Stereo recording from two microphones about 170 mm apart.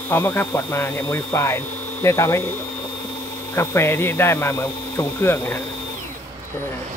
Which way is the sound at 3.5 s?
15° left (ahead or behind).